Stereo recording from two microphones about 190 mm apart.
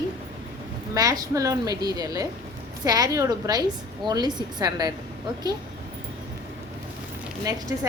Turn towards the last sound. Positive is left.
turn(degrees=-20)  # may be behind; listen again after turning